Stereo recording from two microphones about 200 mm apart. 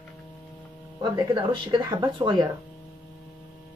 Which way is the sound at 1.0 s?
20° right (ahead or behind).